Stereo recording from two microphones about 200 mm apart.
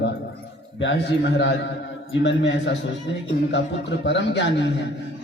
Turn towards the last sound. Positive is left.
turn(degrees=60)  # may be behind; listen again after turning